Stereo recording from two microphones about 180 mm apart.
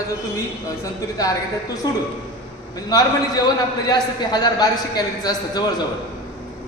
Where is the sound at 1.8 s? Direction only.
25° left (ahead or behind).